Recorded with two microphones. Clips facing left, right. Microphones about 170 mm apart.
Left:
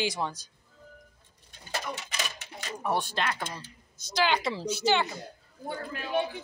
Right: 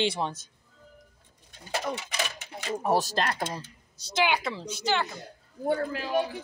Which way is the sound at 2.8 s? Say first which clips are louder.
Right 3 dB; 40° right (ahead or behind).